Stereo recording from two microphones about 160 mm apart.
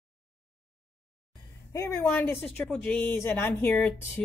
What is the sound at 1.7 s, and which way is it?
Speech, 20° left (ahead or behind).